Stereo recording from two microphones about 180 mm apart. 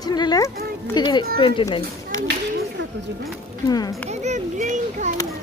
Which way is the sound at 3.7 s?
20° left (ahead or behind).